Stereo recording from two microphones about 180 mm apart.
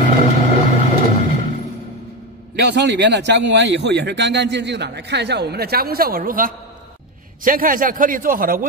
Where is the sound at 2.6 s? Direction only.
70° right (ahead or behind).